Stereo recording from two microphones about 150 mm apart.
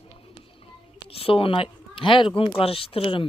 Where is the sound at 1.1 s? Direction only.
40° left (ahead or behind).